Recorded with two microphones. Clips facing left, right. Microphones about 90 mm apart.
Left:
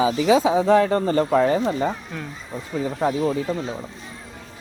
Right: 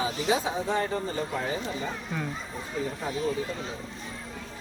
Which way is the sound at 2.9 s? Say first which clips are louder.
Left 12 dB; 80° left.